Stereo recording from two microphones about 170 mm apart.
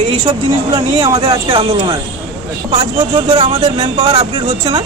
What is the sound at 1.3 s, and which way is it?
A man's voice, 30° right (ahead or behind).